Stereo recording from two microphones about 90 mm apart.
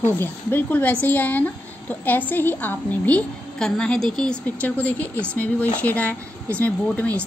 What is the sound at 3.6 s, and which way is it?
A woman's voice, 5° left (ahead or behind).